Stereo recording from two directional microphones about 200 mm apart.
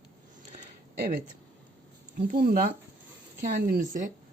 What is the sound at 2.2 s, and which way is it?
A woman's voice, 45° right (ahead or behind).